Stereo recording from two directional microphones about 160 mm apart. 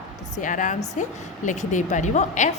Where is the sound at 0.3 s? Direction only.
50° left (ahead or behind).